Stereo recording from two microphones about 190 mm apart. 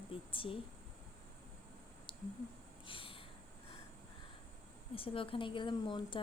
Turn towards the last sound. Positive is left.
turn(degrees=25)  # may be behind; listen again after turning